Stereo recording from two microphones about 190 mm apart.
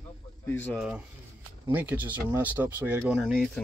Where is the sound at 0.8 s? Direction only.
5° right (ahead or behind).